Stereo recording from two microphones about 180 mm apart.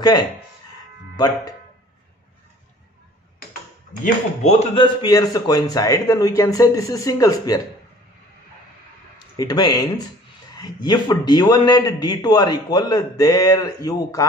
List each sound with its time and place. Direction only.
1.1 s speech: 20° left (ahead or behind)
4.0 s speech: 40° left (ahead or behind)
5.0 s a man's voice: 20° left (ahead or behind)
9.4 s a man's voice: 20° left (ahead or behind)